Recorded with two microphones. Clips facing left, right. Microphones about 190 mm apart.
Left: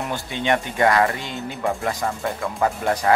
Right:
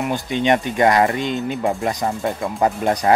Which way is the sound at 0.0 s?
15° right (ahead or behind).